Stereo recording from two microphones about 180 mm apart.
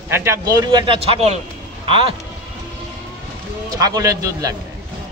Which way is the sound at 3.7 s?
20° right (ahead or behind).